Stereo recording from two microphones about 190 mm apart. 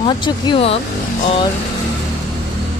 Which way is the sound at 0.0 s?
25° left (ahead or behind).